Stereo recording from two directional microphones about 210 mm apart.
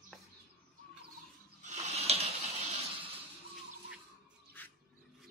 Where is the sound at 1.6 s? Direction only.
30° right (ahead or behind).